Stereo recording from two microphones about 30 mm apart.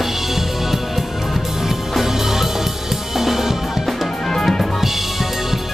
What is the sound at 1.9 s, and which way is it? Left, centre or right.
Music, centre.